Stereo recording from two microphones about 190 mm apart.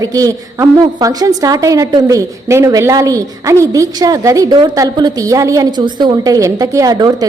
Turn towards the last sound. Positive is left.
turn(degrees=-20)  # may be behind; listen again after turning